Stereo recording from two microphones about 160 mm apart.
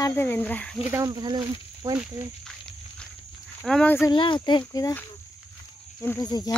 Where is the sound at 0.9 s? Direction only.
25° right (ahead or behind).